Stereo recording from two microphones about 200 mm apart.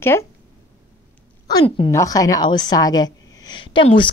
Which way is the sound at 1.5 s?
20° left (ahead or behind).